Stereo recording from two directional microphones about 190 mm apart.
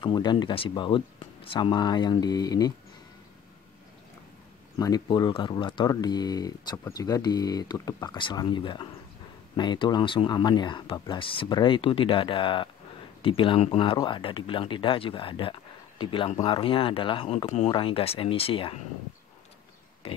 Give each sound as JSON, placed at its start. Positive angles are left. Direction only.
{"t": 0.0, "sound": "speech", "side_deg": 20}
{"t": 4.7, "sound": "speech", "side_deg": 20}